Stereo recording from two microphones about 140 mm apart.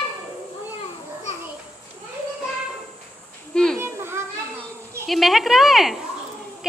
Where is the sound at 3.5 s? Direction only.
5° left (ahead or behind).